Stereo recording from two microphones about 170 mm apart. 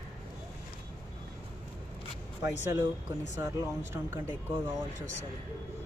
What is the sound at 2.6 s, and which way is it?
Speech, 15° right (ahead or behind).